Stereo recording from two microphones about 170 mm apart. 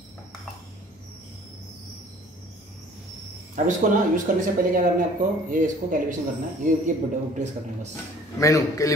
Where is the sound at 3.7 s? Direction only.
50° right (ahead or behind).